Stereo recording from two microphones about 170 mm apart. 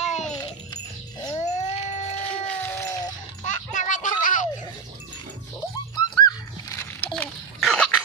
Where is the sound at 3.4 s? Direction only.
45° left (ahead or behind).